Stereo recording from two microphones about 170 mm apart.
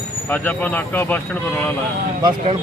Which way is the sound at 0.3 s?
10° left (ahead or behind).